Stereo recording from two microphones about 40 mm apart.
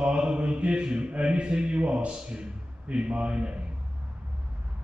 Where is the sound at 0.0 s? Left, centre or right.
Right.